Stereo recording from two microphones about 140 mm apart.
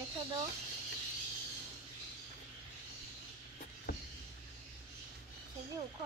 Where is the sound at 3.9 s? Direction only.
90° left.